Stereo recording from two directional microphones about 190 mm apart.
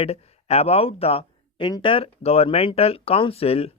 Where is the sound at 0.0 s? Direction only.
30° left (ahead or behind).